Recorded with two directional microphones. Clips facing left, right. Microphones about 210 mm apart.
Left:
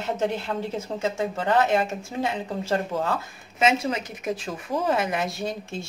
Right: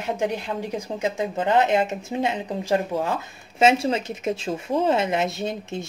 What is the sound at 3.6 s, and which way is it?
Speech, 30° right (ahead or behind).